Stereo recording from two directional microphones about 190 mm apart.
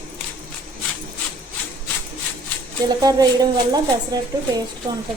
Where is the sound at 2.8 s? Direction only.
20° right (ahead or behind).